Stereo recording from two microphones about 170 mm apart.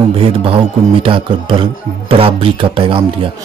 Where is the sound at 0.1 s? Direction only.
30° right (ahead or behind).